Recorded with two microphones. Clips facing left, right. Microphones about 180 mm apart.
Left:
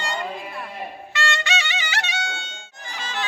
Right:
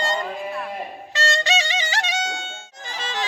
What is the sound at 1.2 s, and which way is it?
Music, 35° right (ahead or behind).